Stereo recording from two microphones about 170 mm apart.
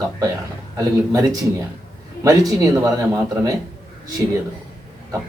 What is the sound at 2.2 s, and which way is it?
Speech, 20° right (ahead or behind).